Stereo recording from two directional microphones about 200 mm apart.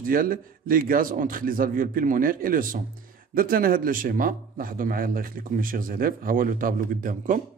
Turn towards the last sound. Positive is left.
turn(degrees=-40)  # may be behind; listen again after turning